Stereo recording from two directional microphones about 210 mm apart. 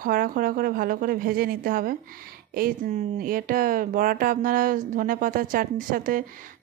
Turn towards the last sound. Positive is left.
turn(degrees=-40)  # may be behind; listen again after turning